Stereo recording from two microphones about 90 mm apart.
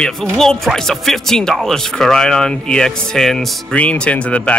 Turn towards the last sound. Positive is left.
turn(degrees=15)  # may be behind; listen again after turning